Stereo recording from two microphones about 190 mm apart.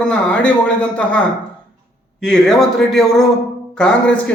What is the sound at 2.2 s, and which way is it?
A man's voice, centre (ahead or behind).